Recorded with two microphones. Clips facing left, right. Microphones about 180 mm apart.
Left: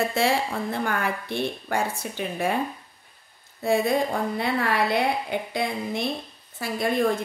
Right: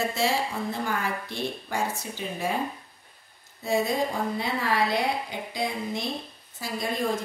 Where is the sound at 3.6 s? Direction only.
60° left (ahead or behind).